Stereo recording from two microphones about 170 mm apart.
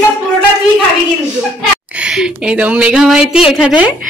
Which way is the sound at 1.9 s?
5° right (ahead or behind).